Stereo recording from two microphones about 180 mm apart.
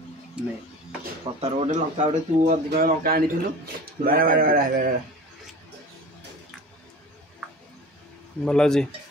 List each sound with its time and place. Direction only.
0.4 s speech: 5° right (ahead or behind)
1.4 s speech: 40° right (ahead or behind)
3.0 s a man's voice: 55° right (ahead or behind)
8.5 s speech: 5° left (ahead or behind)